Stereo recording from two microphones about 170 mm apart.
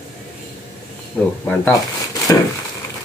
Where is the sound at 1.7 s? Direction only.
20° left (ahead or behind).